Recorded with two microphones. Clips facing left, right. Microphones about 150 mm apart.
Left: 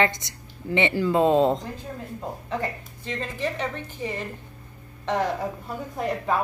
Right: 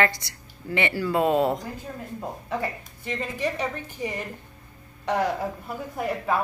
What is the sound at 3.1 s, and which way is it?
A woman's voice, 10° right (ahead or behind).